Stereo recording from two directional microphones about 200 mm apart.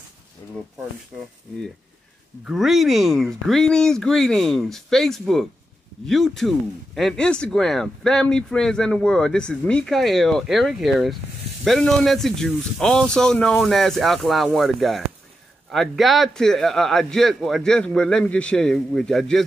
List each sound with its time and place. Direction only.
1.1 s speech: centre (ahead or behind)
2.4 s speech: centre (ahead or behind)